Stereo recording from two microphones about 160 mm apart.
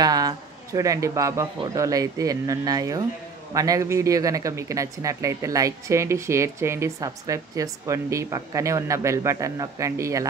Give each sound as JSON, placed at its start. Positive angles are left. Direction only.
{"t": 0.0, "sound": "speech", "side_deg": -25}